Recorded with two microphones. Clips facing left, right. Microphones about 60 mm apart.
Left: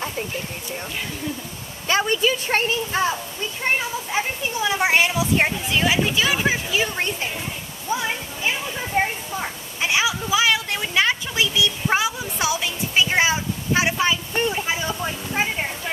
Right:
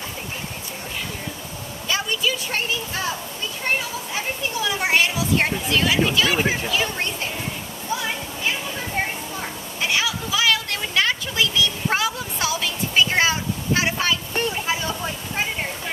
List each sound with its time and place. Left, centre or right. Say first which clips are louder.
1.9 s a woman's voice: left 4 dB; left; by 7.2 s centre
8.5 s children playing: left 1 dB; centre